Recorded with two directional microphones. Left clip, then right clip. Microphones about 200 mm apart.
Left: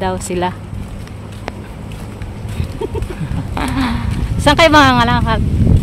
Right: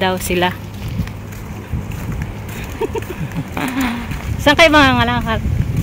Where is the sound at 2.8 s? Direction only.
15° left (ahead or behind).